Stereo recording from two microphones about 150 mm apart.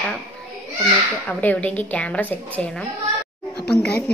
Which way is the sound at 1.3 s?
10° left (ahead or behind).